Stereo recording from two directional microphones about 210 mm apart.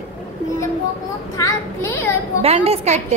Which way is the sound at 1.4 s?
15° left (ahead or behind).